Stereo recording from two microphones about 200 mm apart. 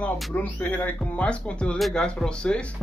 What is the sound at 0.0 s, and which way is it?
Speech, 5° left (ahead or behind).